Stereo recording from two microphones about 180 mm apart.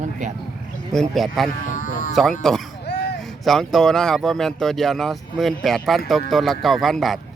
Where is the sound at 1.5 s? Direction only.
50° left (ahead or behind).